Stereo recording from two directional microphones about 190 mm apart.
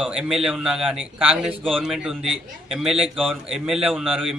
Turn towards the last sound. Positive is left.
turn(degrees=-5)  # may be behind; listen again after turning